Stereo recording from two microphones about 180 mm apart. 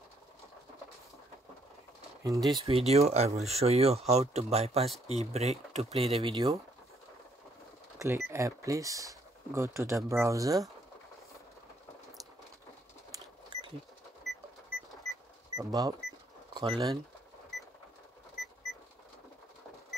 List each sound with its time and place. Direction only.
2.2 s speech: 20° right (ahead or behind)
6.2 s speech: 25° right (ahead or behind)
8.0 s speech: 15° right (ahead or behind)
14.3 s a sound: centre (ahead or behind)
15.5 s speech: 20° right (ahead or behind)